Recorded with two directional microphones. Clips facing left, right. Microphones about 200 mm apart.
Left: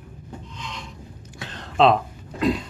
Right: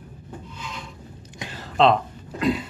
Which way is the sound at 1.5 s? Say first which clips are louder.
Left 1 dB; centre (ahead or behind).